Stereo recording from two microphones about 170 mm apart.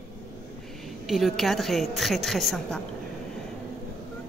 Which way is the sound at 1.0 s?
Centre (ahead or behind).